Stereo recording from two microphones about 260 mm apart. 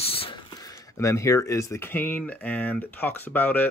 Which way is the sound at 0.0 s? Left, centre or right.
Left.